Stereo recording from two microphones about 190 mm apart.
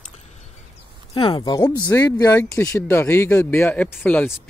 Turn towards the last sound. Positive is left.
turn(degrees=10)  # may be behind; listen again after turning